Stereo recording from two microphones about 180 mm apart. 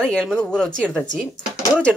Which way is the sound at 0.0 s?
5° left (ahead or behind).